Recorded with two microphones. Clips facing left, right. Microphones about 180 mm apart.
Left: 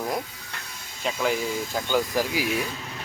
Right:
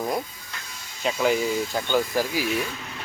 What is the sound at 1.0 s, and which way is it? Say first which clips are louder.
Speech: right 3 dB; centre (ahead or behind).